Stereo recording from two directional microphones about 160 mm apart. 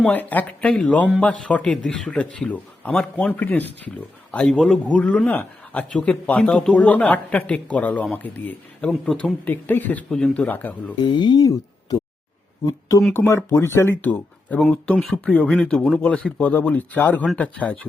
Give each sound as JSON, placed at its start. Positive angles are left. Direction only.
{"t": 0.0, "sound": "speech", "side_deg": 10}
{"t": 11.0, "sound": "speech", "side_deg": 25}
{"t": 13.1, "sound": "speech", "side_deg": 15}